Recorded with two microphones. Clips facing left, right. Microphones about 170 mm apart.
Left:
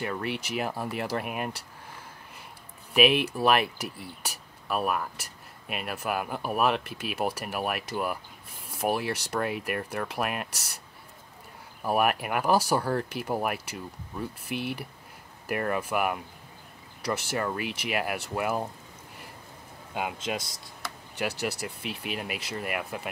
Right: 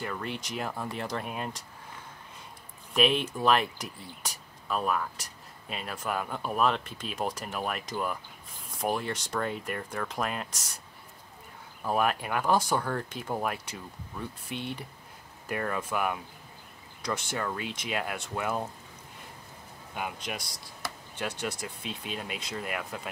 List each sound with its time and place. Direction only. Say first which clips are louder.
0.6 s speech: left 3 dB; 10° left (ahead or behind)
2.9 s speech: left 3 dB; 10° left (ahead or behind)
5.1 s a sound: left 1 dB; 5° left (ahead or behind)
5.9 s speech: left 2 dB; 10° left (ahead or behind)
11.8 s speech: left 2 dB; 10° left (ahead or behind)
17.6 s speech: left 3 dB; 70° left (ahead or behind)
17.9 s speech: left 3 dB; 5° left (ahead or behind)
19.9 s speech: left 4 dB; 20° left (ahead or behind)
21.4 s speech: left 3 dB; 5° left (ahead or behind)
21.8 s speech: left 3 dB; 70° left (ahead or behind)
22.1 s speech: left 2 dB; 5° left (ahead or behind)